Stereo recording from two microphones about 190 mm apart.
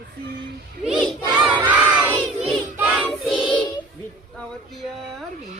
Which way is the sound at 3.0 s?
Centre (ahead or behind).